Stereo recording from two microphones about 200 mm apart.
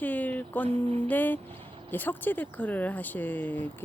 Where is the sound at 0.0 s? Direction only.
10° left (ahead or behind).